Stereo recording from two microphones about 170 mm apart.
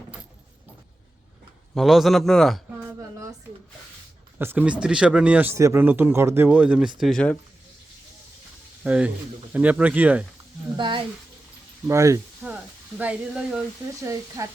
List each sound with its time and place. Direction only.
1.7 s a man's voice: centre (ahead or behind)
4.4 s speech: 10° right (ahead or behind)
7.0 s a man's voice: 5° left (ahead or behind)
8.8 s speech: 10° right (ahead or behind)
10.8 s speech: 30° right (ahead or behind); by 13.6 s 5° right (ahead or behind)
14.0 s speech: 20° right (ahead or behind)